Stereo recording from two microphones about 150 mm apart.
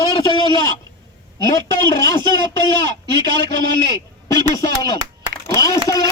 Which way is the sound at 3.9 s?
25° left (ahead or behind).